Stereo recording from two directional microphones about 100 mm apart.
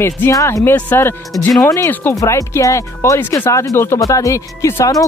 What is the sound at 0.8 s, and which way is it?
Speech, 20° left (ahead or behind).